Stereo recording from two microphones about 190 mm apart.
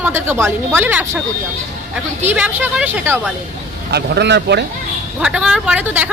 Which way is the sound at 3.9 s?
60° right (ahead or behind).